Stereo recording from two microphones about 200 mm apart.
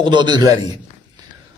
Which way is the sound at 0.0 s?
20° right (ahead or behind).